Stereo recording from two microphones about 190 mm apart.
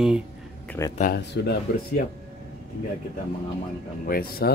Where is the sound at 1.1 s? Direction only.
60° left (ahead or behind).